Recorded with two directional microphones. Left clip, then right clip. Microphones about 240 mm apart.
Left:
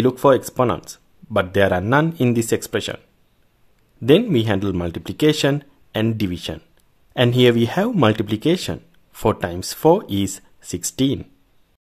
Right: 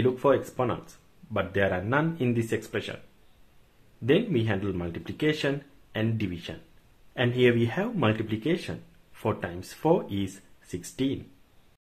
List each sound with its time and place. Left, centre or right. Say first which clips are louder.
0.0 s speech: left 8 dB; left
4.0 s speech: left 9 dB; left